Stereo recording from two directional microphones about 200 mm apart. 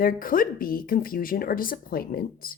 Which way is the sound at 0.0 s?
45° left (ahead or behind).